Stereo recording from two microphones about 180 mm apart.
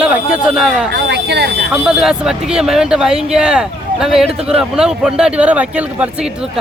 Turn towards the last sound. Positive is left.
turn(degrees=-5)  # may be behind; listen again after turning